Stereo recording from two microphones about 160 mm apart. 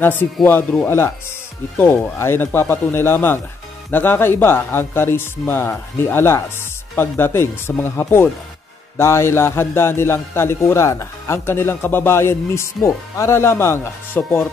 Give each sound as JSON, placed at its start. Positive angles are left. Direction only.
{"t": 0.0, "sound": "a man's voice", "side_deg": 10}